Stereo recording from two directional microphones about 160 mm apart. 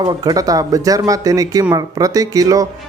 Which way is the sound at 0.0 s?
25° right (ahead or behind).